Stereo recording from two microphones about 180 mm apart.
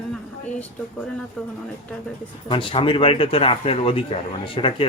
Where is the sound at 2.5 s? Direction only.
30° left (ahead or behind).